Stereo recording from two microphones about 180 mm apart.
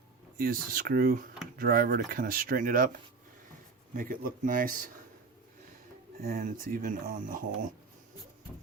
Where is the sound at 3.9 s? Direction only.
50° right (ahead or behind).